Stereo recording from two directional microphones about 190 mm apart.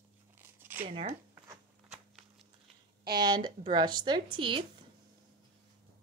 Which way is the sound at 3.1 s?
25° right (ahead or behind).